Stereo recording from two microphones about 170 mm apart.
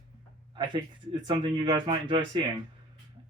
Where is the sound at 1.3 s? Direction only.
30° right (ahead or behind).